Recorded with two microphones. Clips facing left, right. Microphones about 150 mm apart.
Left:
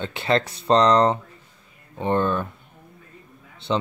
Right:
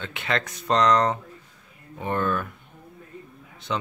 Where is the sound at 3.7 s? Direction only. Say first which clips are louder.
Left 5 dB; 30° left (ahead or behind).